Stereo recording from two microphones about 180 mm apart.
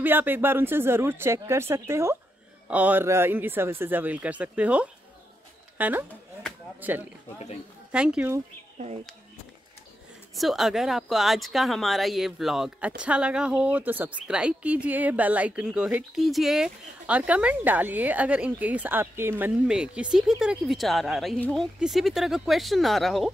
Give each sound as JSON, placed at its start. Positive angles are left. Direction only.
{"t": 0.0, "sound": "speech", "side_deg": -10}
{"t": 7.9, "sound": "speech", "side_deg": -5}
{"t": 8.7, "sound": "speech", "side_deg": -35}
{"t": 10.3, "sound": "speech", "side_deg": 0}